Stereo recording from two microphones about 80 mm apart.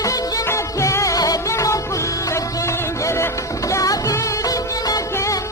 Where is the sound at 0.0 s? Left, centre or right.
Left.